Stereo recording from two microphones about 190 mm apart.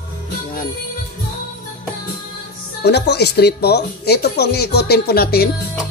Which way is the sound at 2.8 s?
60° left (ahead or behind).